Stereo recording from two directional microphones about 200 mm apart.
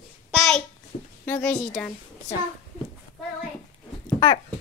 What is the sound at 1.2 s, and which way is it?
Speech, 5° left (ahead or behind).